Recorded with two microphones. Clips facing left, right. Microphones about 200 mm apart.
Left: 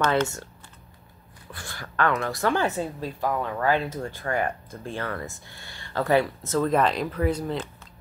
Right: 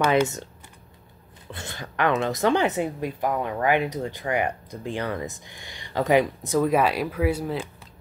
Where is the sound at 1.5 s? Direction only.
20° right (ahead or behind).